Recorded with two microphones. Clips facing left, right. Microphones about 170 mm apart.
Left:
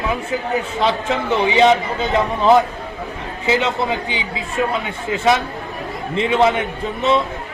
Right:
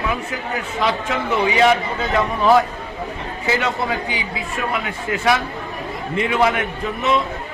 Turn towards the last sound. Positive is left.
turn(degrees=25)  # may be behind; listen again after turning